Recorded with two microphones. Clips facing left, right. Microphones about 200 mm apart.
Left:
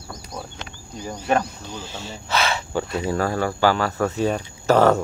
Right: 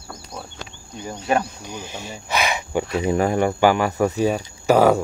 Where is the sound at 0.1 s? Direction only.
5° right (ahead or behind).